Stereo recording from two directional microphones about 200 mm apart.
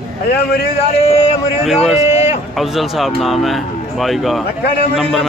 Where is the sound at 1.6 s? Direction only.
Centre (ahead or behind).